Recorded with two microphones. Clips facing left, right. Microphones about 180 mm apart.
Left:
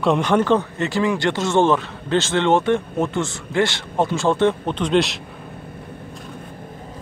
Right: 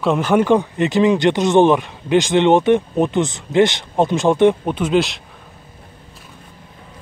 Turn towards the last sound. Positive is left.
turn(degrees=0)  # may be behind; listen again after turning